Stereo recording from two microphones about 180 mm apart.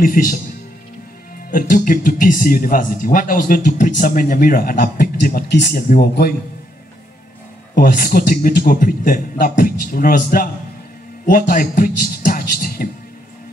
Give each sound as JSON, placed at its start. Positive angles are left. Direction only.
{"t": 0.0, "sound": "speech", "side_deg": 50}
{"t": 1.5, "sound": "a man's voice", "side_deg": 50}
{"t": 7.7, "sound": "speech", "side_deg": 50}